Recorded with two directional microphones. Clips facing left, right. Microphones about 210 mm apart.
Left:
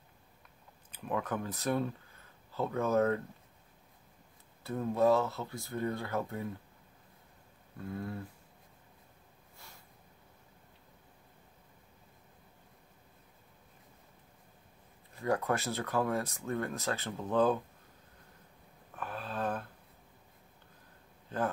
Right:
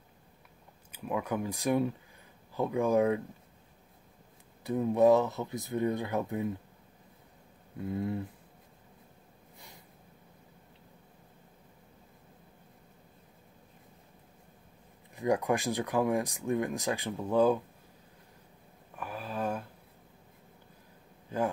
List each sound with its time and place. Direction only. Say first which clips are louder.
0.9 s speech: right 2 dB; 10° right (ahead or behind)
4.6 s speech: right 4 dB; 15° right (ahead or behind)
7.9 s speech: right 6 dB; 20° right (ahead or behind)
15.1 s speech: right 3 dB; 15° right (ahead or behind)
18.9 s a sound: right 2 dB; 10° right (ahead or behind)